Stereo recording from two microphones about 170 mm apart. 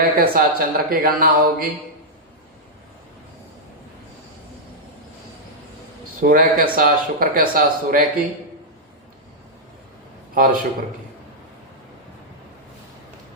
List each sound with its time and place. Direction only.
0.0 s speech: 60° right (ahead or behind)
6.2 s speech: 55° right (ahead or behind)
10.3 s a man's voice: 55° right (ahead or behind)